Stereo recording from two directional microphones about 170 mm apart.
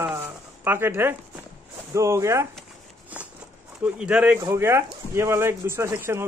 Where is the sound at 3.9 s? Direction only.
5° right (ahead or behind).